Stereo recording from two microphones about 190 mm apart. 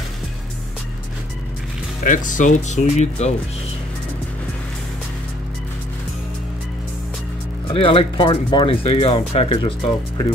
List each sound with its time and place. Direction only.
2.0 s speech: 45° left (ahead or behind)
7.7 s speech: 30° left (ahead or behind)